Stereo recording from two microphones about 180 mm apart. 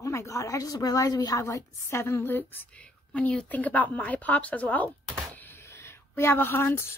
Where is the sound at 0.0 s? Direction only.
15° left (ahead or behind).